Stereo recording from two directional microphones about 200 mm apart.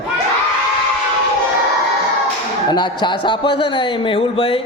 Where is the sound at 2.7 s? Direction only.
20° left (ahead or behind).